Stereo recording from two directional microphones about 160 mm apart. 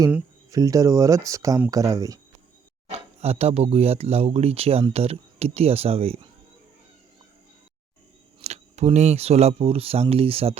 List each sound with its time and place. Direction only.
0.5 s speech: 20° right (ahead or behind)
3.2 s speech: 40° right (ahead or behind)
8.4 s speech: 45° right (ahead or behind)